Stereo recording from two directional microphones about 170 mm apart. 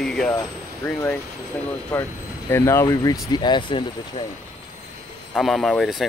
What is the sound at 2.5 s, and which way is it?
Speech, 15° left (ahead or behind).